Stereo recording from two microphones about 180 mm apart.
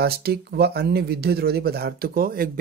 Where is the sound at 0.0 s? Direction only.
60° right (ahead or behind).